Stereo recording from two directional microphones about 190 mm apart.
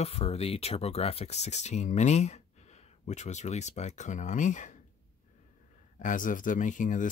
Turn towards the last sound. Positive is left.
turn(degrees=40)  # may be behind; listen again after turning